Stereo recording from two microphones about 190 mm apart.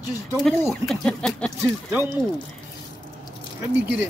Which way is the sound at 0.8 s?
5° left (ahead or behind).